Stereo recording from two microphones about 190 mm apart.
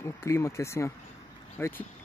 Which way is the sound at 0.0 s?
15° left (ahead or behind).